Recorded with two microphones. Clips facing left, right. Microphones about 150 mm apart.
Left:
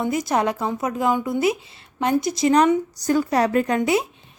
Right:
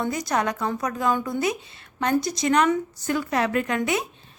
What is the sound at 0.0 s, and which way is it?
A woman's voice, 25° left (ahead or behind).